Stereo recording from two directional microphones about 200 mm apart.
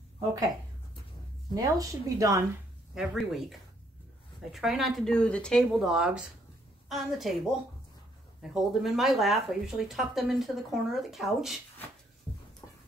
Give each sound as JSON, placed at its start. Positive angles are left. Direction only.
{"t": 1.5, "sound": "a woman's voice", "side_deg": -15}
{"t": 2.9, "sound": "speech", "side_deg": 0}
{"t": 8.4, "sound": "speech", "side_deg": 0}